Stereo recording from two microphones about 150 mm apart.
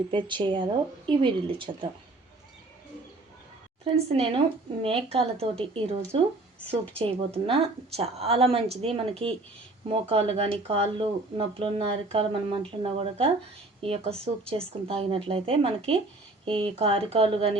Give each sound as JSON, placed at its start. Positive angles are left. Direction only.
{"t": 0.1, "sound": "speech", "side_deg": -30}
{"t": 3.8, "sound": "speech", "side_deg": -40}